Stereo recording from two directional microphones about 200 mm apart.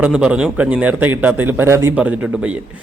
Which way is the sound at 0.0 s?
5° right (ahead or behind).